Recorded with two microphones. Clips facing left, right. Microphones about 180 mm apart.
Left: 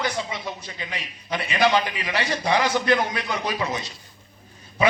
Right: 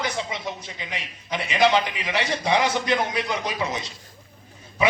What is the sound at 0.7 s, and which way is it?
A man's voice, 20° right (ahead or behind).